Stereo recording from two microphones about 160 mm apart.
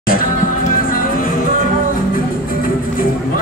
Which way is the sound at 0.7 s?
60° left (ahead or behind).